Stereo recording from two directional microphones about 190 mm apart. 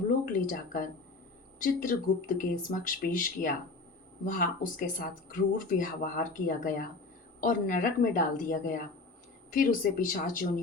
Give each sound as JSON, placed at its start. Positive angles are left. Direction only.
{"t": 0.3, "sound": "speech", "side_deg": 45}